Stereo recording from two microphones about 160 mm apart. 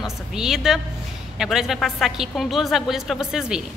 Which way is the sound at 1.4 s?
5° right (ahead or behind).